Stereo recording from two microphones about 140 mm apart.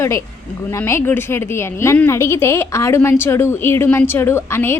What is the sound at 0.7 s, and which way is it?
A woman's voice, 20° left (ahead or behind).